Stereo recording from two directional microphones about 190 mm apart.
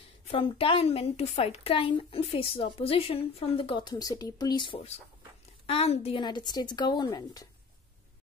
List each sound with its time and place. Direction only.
0.3 s a woman's voice: 30° left (ahead or behind)